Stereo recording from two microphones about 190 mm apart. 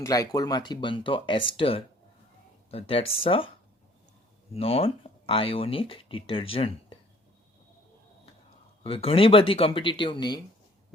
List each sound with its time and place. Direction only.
0.0 s speech: 20° left (ahead or behind)
4.5 s speech: 30° left (ahead or behind)
8.8 s speech: 30° left (ahead or behind)